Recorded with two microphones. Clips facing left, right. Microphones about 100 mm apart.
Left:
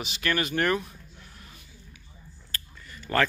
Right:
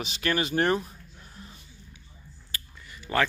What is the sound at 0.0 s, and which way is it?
Speech, 30° right (ahead or behind).